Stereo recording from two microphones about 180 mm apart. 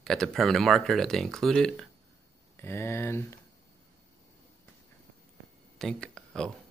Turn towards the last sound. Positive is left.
turn(degrees=5)  # may be behind; listen again after turning